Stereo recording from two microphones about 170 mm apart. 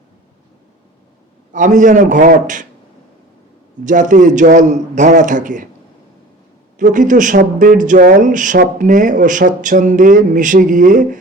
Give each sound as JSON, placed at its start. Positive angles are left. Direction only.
{"t": 1.5, "sound": "speech", "side_deg": -50}
{"t": 3.8, "sound": "speech", "side_deg": -50}
{"t": 6.7, "sound": "speech", "side_deg": -50}